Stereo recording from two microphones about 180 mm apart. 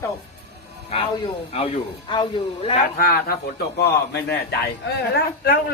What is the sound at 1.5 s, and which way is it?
Speech, 30° left (ahead or behind).